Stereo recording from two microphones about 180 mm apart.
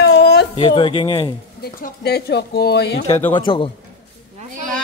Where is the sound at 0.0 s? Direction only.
65° left (ahead or behind).